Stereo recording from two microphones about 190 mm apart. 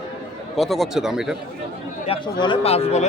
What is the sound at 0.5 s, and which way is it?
Speech, centre (ahead or behind).